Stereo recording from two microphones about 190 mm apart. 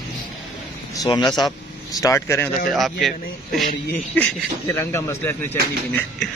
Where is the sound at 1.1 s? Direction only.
20° left (ahead or behind).